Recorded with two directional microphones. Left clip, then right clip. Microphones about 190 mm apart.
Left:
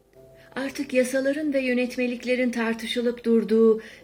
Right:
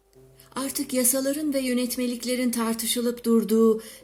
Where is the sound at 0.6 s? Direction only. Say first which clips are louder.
Left 3 dB; 30° right (ahead or behind).